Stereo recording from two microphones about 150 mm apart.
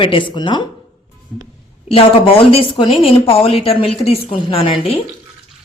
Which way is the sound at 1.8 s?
40° left (ahead or behind).